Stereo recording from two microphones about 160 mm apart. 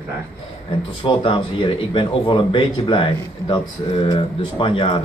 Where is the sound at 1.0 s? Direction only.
30° left (ahead or behind).